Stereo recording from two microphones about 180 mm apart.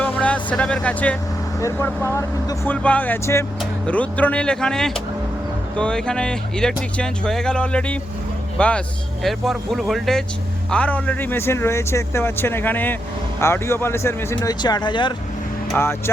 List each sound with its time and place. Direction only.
0.0 s music: 5° left (ahead or behind)
1.6 s speech: 15° left (ahead or behind)
15.8 s speech: 15° left (ahead or behind)